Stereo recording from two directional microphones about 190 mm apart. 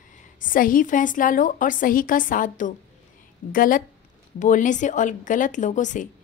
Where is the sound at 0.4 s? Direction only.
45° left (ahead or behind).